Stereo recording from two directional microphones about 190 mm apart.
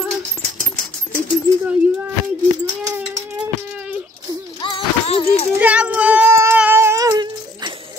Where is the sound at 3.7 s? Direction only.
5° right (ahead or behind).